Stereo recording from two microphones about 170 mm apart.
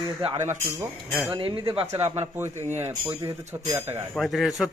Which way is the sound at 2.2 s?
15° right (ahead or behind).